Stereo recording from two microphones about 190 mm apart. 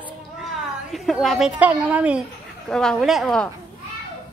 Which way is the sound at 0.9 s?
Centre (ahead or behind).